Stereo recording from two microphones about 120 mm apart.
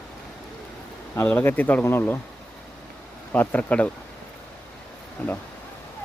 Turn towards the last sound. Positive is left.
turn(degrees=15)  # may be behind; listen again after turning